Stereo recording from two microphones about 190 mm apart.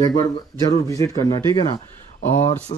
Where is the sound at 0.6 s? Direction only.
20° left (ahead or behind).